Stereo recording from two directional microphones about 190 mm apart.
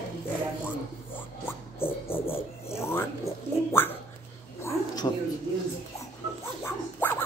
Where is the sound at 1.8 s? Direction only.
10° left (ahead or behind).